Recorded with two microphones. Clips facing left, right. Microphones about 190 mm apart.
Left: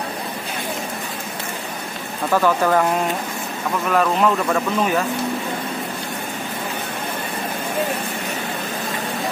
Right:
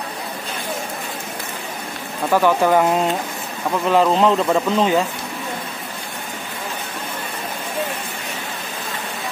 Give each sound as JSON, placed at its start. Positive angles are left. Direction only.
{"t": 2.3, "sound": "speech", "side_deg": -15}